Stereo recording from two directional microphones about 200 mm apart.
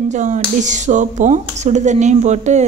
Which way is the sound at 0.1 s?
35° right (ahead or behind).